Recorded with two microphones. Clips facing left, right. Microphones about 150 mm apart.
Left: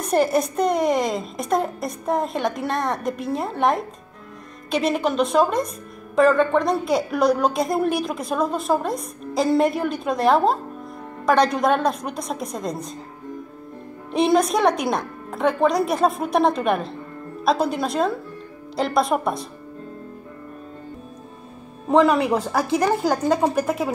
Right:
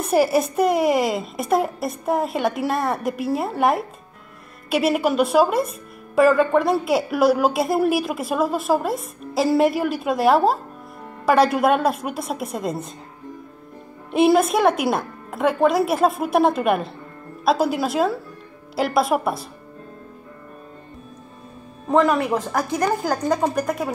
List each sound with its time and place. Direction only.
0.0 s a woman's voice: 5° right (ahead or behind)
14.1 s a woman's voice: 5° right (ahead or behind)
21.8 s speech: 5° left (ahead or behind)